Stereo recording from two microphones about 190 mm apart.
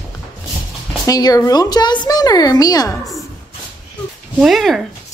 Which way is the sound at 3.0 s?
Centre (ahead or behind).